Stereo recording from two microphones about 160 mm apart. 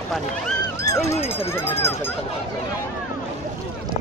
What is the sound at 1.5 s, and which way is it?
Speech, 15° left (ahead or behind).